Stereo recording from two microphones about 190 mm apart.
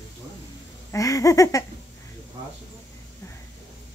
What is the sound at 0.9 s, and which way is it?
Speech, 15° left (ahead or behind).